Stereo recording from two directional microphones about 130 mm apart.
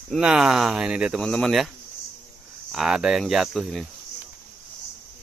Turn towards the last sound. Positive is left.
turn(degrees=0)  # may be behind; listen again after turning